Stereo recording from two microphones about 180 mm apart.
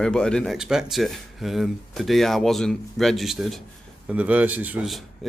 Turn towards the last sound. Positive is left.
turn(degrees=0)  # may be behind; listen again after turning